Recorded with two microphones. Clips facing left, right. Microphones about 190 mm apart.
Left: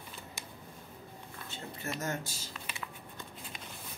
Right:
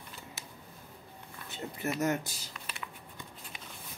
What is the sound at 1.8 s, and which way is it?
Speech, 20° right (ahead or behind).